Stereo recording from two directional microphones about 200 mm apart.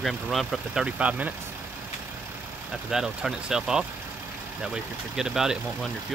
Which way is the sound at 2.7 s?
5° right (ahead or behind).